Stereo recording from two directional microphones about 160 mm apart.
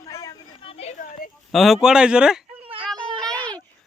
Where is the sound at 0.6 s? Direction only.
40° left (ahead or behind).